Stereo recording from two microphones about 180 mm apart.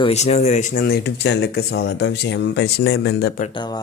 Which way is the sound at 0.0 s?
35° left (ahead or behind).